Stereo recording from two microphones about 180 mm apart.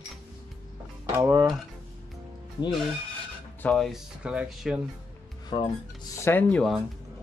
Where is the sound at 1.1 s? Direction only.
20° right (ahead or behind).